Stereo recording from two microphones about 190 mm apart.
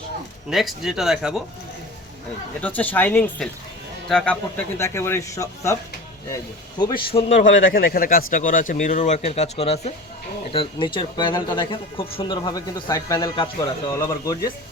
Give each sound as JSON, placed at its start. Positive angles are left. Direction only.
{"t": 0.5, "sound": "speech", "side_deg": 0}
{"t": 2.6, "sound": "speech", "side_deg": 10}
{"t": 7.4, "sound": "a man's voice", "side_deg": 90}
{"t": 7.7, "sound": "speech", "side_deg": 50}